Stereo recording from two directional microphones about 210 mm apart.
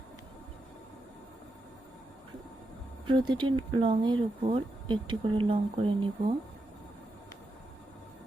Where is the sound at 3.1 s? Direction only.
20° right (ahead or behind).